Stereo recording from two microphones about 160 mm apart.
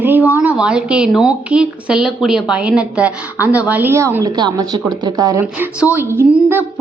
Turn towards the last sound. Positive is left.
turn(degrees=-10)  # may be behind; listen again after turning